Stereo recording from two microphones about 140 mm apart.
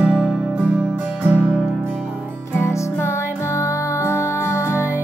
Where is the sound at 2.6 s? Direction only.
20° left (ahead or behind).